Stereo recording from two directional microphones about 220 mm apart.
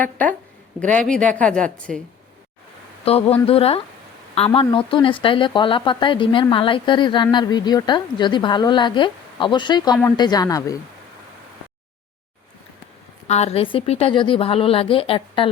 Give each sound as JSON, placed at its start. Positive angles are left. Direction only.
{"t": 0.0, "sound": "a woman's voice", "side_deg": 5}
{"t": 3.0, "sound": "a man's voice", "side_deg": 25}
{"t": 13.2, "sound": "speech", "side_deg": 30}